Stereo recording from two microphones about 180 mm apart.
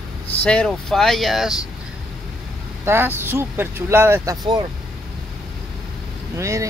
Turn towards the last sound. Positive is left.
turn(degrees=-15)  # may be behind; listen again after turning